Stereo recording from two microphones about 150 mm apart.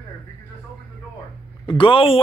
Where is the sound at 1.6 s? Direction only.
35° left (ahead or behind).